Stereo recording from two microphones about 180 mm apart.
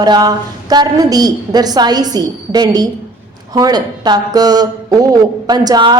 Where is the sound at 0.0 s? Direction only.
20° right (ahead or behind).